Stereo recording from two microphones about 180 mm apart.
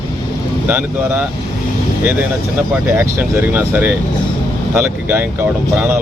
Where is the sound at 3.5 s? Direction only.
10° right (ahead or behind).